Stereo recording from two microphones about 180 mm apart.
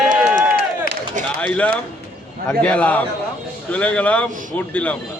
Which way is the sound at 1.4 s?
5° left (ahead or behind).